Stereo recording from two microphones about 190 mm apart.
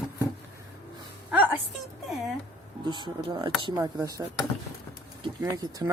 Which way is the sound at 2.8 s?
25° right (ahead or behind).